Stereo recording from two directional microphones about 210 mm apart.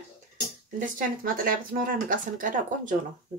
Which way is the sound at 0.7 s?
40° right (ahead or behind).